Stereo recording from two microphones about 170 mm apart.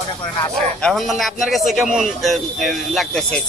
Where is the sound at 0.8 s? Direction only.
5° left (ahead or behind).